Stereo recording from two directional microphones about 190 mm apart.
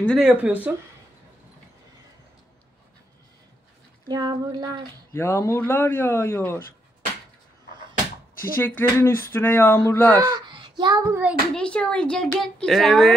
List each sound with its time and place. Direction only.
0.0 s speech: centre (ahead or behind)
4.1 s a sound: 20° right (ahead or behind)
5.1 s speech: 15° left (ahead or behind)
8.4 s speech: 10° left (ahead or behind)
10.2 s child singing: 20° right (ahead or behind)
11.5 s speech: 5° left (ahead or behind)